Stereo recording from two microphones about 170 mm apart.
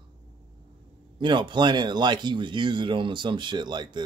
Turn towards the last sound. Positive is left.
turn(degrees=-25)  # may be behind; listen again after turning